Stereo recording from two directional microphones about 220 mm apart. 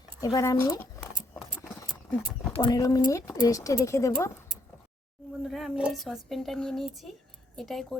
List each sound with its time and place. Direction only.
0.2 s speech: 15° left (ahead or behind)
1.6 s horse: 10° left (ahead or behind)
2.6 s speech: 15° left (ahead or behind)
5.5 s speech: centre (ahead or behind)